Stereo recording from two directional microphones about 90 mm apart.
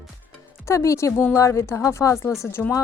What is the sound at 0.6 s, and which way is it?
Speech, 35° left (ahead or behind).